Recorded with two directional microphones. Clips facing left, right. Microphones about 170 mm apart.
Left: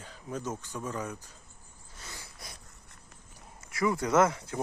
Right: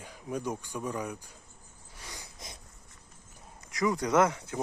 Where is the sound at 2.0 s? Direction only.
15° right (ahead or behind).